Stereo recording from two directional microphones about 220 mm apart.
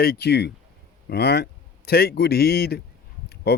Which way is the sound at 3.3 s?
45° left (ahead or behind).